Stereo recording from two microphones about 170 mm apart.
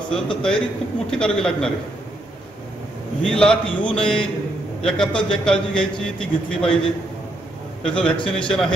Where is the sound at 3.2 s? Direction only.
5° left (ahead or behind).